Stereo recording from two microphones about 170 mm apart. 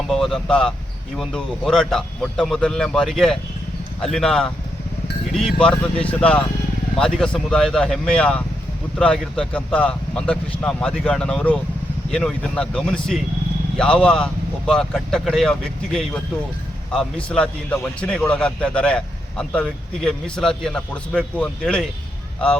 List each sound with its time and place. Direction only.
0.1 s a man's voice: centre (ahead or behind)
17.2 s a man's voice: 5° left (ahead or behind)